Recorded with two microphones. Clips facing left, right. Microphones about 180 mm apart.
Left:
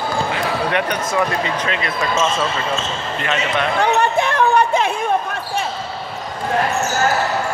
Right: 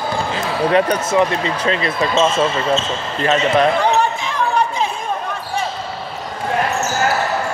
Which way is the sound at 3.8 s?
65° left (ahead or behind).